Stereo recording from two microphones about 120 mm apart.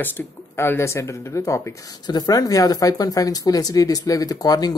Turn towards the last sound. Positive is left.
turn(degrees=30)  # may be behind; listen again after turning